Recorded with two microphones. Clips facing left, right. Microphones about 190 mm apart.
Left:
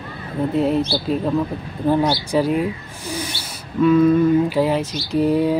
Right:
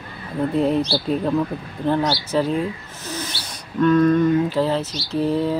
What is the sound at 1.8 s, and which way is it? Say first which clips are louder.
Speech: left 3 dB; 10° left (ahead or behind).